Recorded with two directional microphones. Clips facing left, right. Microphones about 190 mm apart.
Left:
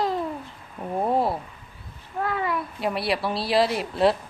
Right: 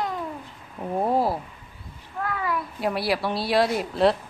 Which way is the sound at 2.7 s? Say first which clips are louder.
Right 2 dB; centre (ahead or behind).